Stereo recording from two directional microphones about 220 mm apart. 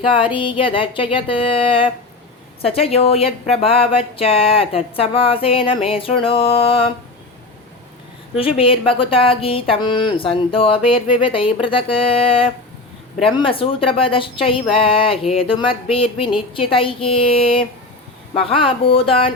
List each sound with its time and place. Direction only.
0.1 s speech: 25° left (ahead or behind)
8.4 s speech: 25° left (ahead or behind)